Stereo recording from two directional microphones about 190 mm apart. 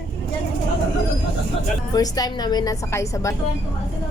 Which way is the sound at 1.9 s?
20° left (ahead or behind).